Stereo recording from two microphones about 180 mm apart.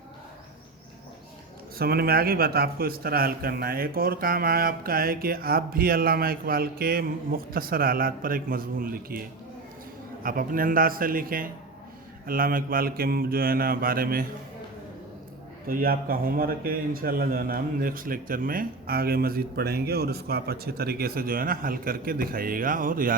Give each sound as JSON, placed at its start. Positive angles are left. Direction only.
{"t": 1.8, "sound": "a man's voice", "side_deg": -60}
{"t": 10.2, "sound": "a man's voice", "side_deg": -50}
{"t": 15.6, "sound": "a man's voice", "side_deg": -55}